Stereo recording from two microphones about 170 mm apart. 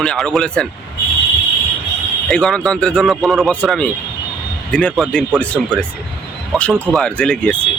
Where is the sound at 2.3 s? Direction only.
5° left (ahead or behind).